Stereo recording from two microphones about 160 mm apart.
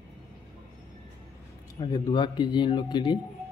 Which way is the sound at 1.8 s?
25° left (ahead or behind).